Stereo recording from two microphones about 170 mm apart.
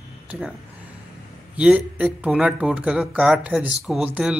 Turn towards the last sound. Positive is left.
turn(degrees=-5)  # may be behind; listen again after turning